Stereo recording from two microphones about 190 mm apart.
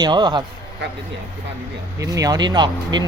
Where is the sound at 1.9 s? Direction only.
15° right (ahead or behind).